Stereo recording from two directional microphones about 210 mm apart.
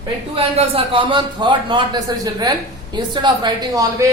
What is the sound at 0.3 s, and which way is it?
Speech, 25° right (ahead or behind).